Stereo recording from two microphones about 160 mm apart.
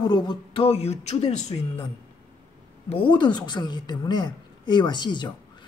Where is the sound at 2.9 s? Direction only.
30° left (ahead or behind).